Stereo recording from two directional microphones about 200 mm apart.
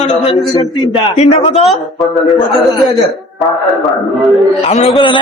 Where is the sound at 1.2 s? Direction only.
30° left (ahead or behind).